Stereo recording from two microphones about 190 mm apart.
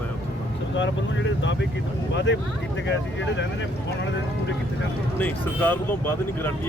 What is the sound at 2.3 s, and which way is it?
Speech, 75° left (ahead or behind).